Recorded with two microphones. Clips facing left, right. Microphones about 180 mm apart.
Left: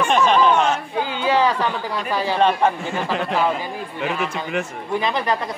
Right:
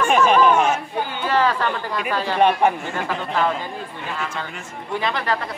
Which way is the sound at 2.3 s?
15° right (ahead or behind).